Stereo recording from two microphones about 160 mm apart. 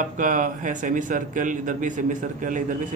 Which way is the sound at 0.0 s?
55° right (ahead or behind).